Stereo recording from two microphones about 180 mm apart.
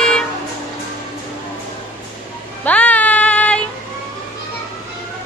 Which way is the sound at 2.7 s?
10° left (ahead or behind).